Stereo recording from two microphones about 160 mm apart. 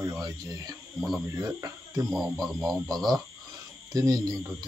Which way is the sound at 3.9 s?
20° right (ahead or behind).